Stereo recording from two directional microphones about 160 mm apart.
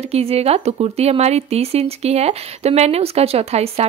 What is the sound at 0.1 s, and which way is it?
Speech, 40° right (ahead or behind).